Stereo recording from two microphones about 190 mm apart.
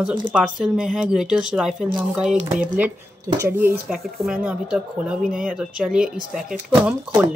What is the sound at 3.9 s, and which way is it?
Speech, centre (ahead or behind).